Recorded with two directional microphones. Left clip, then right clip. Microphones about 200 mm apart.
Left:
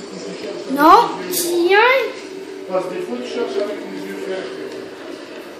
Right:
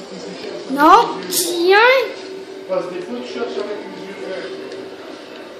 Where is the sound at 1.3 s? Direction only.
40° right (ahead or behind).